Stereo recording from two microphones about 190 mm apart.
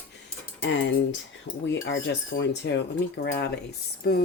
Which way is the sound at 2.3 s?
65° left (ahead or behind).